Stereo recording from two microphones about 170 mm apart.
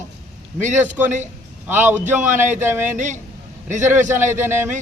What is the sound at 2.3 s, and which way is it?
Speech, 45° right (ahead or behind).